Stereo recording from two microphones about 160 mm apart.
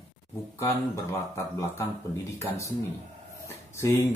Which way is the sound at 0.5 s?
20° left (ahead or behind).